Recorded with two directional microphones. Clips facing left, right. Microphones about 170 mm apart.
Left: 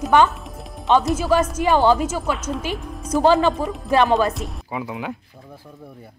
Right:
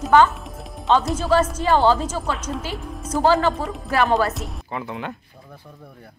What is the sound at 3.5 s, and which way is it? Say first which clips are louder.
Speech: left 2 dB; centre (ahead or behind).